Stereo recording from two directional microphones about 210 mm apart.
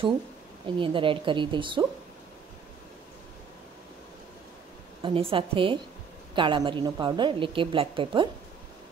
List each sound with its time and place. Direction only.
0.7 s a woman's voice: 25° right (ahead or behind)
5.0 s a woman's voice: 25° right (ahead or behind)